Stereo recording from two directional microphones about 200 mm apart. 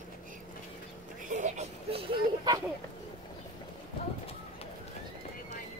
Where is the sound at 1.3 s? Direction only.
35° right (ahead or behind).